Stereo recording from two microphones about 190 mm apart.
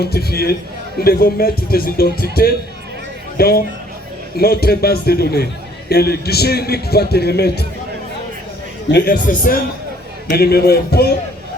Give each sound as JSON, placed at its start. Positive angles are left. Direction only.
{"t": 0.0, "sound": "a man's voice", "side_deg": 55}
{"t": 8.9, "sound": "a man's voice", "side_deg": 55}